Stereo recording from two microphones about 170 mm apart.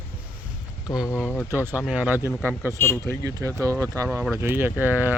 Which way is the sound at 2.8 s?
15° left (ahead or behind).